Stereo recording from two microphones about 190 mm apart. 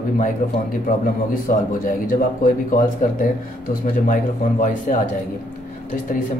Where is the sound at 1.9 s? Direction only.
45° left (ahead or behind).